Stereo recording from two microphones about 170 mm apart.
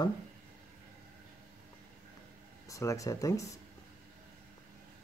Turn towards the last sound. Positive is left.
turn(degrees=20)  # may be behind; listen again after turning